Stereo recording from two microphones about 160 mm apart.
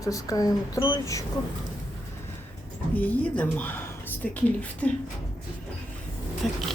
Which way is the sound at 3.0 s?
10° left (ahead or behind).